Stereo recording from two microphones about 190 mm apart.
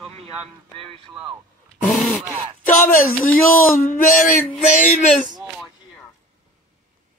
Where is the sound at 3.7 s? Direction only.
45° left (ahead or behind).